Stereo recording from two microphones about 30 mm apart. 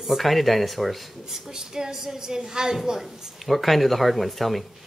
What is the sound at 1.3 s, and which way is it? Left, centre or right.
A woman's voice, right.